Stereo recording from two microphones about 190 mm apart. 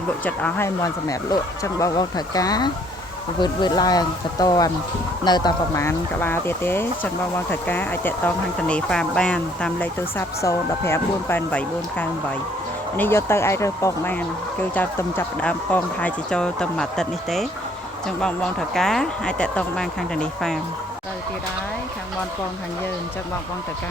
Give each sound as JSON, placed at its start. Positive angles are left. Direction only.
{"t": 0.3, "sound": "speech", "side_deg": 10}